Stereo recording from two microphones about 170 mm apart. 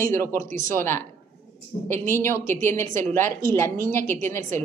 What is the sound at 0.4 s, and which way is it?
Speech, 50° right (ahead or behind).